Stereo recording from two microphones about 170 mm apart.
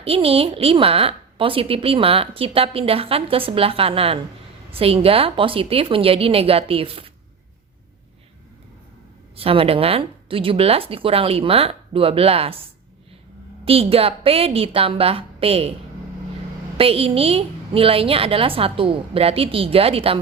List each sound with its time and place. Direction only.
0.0 s a woman's voice: 35° right (ahead or behind)
9.3 s a woman's voice: 35° right (ahead or behind)
13.7 s a woman's voice: 35° right (ahead or behind)
16.7 s a woman's voice: 35° right (ahead or behind)